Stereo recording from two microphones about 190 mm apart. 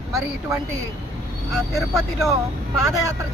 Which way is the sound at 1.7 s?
Centre (ahead or behind).